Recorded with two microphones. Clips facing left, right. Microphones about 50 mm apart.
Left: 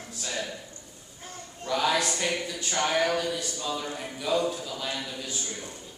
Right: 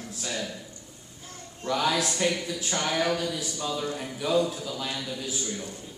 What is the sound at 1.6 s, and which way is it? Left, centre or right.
Speech, centre.